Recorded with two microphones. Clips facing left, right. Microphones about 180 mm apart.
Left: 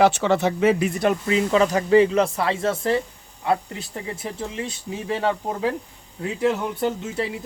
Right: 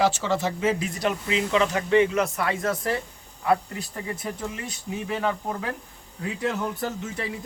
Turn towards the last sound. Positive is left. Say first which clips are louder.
# left 6 dB
turn(degrees=25)  # may be behind; listen again after turning